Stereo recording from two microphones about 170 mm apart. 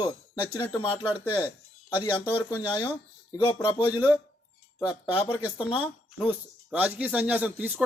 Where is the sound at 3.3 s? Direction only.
30° left (ahead or behind).